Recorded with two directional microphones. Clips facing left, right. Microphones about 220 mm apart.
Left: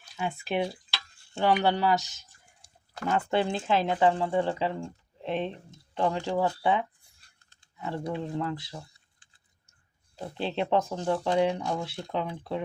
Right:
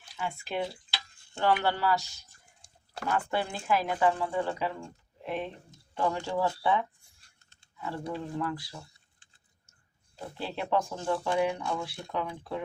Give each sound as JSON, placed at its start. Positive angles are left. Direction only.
{"t": 0.2, "sound": "speech", "side_deg": 20}
{"t": 10.3, "sound": "speech", "side_deg": 25}